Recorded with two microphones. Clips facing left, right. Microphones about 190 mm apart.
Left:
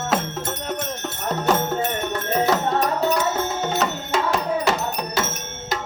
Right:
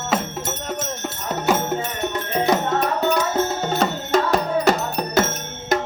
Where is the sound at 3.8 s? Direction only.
40° right (ahead or behind).